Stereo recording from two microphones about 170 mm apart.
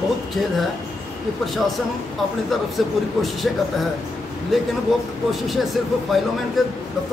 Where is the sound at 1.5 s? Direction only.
Centre (ahead or behind).